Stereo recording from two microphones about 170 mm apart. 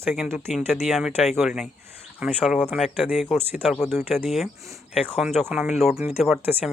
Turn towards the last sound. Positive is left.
turn(degrees=0)  # may be behind; listen again after turning